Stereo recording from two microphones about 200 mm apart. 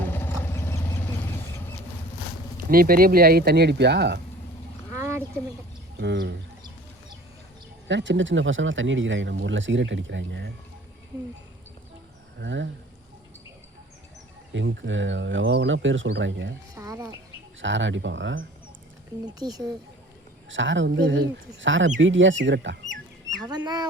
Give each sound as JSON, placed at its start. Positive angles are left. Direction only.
{"t": 0.0, "sound": "vehicle", "side_deg": 10}
{"t": 2.6, "sound": "speech", "side_deg": -45}
{"t": 4.9, "sound": "a sound", "side_deg": -15}
{"t": 6.0, "sound": "speech", "side_deg": -60}
{"t": 7.9, "sound": "speech", "side_deg": -65}
{"t": 12.4, "sound": "speech", "side_deg": -65}
{"t": 14.5, "sound": "speech", "side_deg": -70}
{"t": 16.7, "sound": "speech", "side_deg": -15}
{"t": 17.6, "sound": "speech", "side_deg": -70}
{"t": 19.2, "sound": "speech", "side_deg": -20}
{"t": 20.5, "sound": "speech", "side_deg": -70}
{"t": 23.4, "sound": "speech", "side_deg": -20}